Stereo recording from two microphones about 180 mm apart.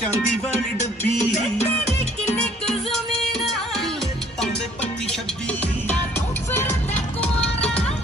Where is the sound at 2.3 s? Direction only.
Centre (ahead or behind).